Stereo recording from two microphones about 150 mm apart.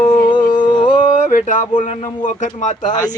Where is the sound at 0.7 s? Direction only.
35° left (ahead or behind).